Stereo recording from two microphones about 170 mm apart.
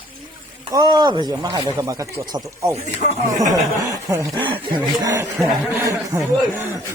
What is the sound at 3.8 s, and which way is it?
Speech, 20° right (ahead or behind).